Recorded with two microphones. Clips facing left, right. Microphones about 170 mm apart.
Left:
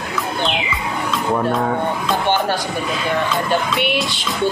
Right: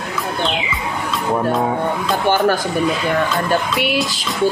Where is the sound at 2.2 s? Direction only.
45° right (ahead or behind).